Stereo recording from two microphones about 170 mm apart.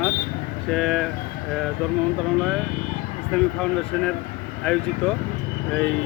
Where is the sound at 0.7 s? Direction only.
Centre (ahead or behind).